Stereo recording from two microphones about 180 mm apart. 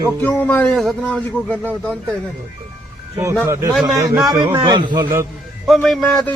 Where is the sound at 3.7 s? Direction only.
Centre (ahead or behind).